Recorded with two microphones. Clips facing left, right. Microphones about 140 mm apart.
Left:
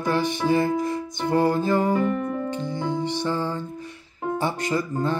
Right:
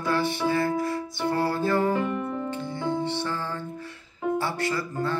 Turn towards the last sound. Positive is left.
turn(degrees=20)  # may be behind; listen again after turning